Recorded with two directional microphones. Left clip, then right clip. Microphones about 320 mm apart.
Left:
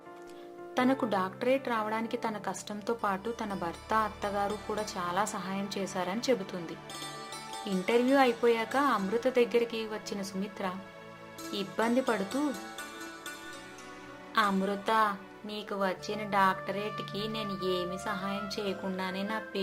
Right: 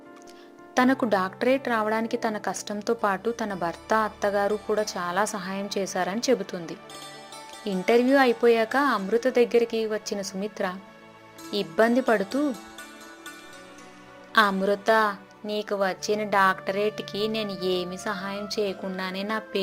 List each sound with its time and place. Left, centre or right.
0.7 s a woman's voice: centre
12.4 s speech: centre
14.3 s speech: centre